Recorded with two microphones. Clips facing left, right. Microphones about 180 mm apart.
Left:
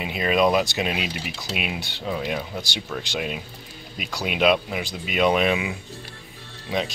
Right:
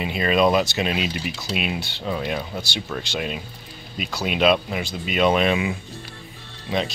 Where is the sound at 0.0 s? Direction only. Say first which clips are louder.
Right 1 dB; 10° left (ahead or behind).